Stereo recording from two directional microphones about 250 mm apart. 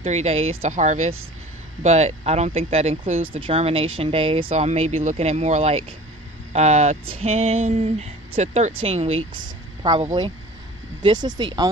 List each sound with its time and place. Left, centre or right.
0.0 s speech: right